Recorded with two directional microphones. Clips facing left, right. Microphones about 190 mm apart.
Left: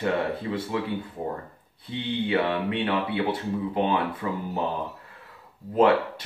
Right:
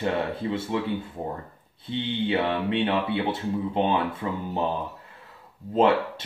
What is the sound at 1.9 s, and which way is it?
Speech, 25° right (ahead or behind).